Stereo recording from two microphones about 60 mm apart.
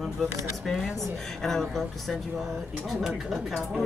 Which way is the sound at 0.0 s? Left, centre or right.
Centre.